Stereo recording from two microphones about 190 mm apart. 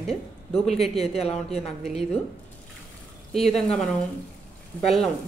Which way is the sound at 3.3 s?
Centre (ahead or behind).